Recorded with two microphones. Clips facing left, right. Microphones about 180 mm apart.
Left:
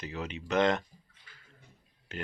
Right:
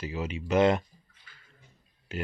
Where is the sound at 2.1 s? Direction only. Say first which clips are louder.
Right 4 dB; 10° right (ahead or behind).